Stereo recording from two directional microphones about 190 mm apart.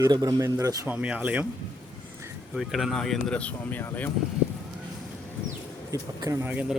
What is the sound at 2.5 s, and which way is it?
Speech, centre (ahead or behind).